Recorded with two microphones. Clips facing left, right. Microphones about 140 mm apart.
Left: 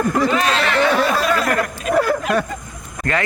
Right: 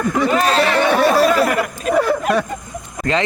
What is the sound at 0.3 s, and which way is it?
Speech, 35° right (ahead or behind).